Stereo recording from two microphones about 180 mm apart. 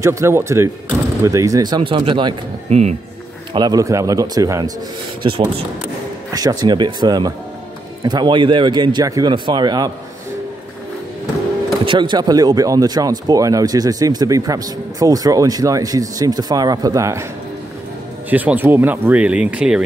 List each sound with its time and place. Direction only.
0.0 s speech: 15° right (ahead or behind)
6.3 s speech: 20° right (ahead or behind)
11.8 s speech: 25° right (ahead or behind)
18.3 s speech: 10° right (ahead or behind)